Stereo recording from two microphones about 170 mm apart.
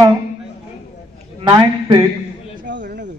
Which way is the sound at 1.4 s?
30° right (ahead or behind).